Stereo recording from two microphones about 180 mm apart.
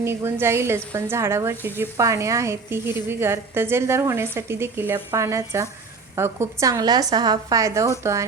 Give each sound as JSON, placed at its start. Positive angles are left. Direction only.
{"t": 0.0, "sound": "a woman's voice", "side_deg": -15}